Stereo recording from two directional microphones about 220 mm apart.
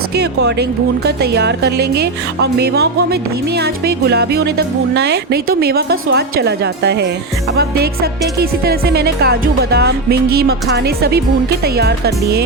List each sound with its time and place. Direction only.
0.1 s speech: 50° right (ahead or behind)